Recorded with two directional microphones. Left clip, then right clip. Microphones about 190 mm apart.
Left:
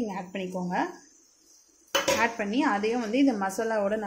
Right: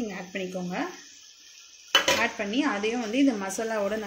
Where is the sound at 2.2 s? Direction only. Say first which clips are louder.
Left 1 dB; 5° left (ahead or behind).